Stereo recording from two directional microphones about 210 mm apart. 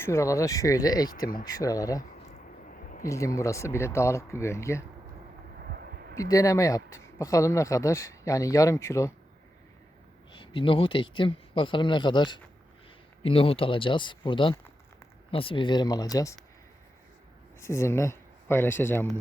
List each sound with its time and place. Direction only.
0.0 s speech: 15° left (ahead or behind)
5.6 s a sound: 45° right (ahead or behind)
6.1 s speech: 15° left (ahead or behind)
10.3 s speech: 25° left (ahead or behind)
17.6 s speech: 15° left (ahead or behind)